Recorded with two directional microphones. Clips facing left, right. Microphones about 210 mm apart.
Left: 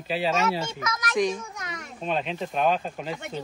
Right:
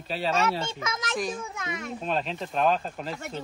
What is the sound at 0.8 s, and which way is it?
Speech, 25° right (ahead or behind).